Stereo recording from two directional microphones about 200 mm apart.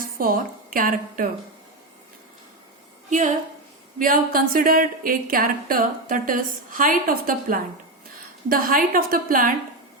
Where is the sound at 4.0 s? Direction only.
45° right (ahead or behind).